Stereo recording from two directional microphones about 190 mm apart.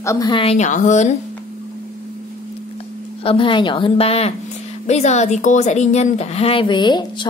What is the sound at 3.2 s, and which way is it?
A woman's voice, 30° left (ahead or behind).